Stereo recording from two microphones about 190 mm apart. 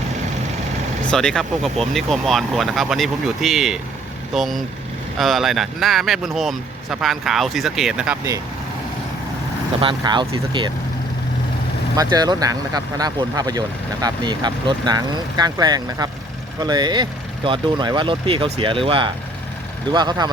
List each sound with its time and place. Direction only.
1.1 s speech: 5° left (ahead or behind)
9.8 s speech: 25° right (ahead or behind)
11.9 s speech: 20° right (ahead or behind)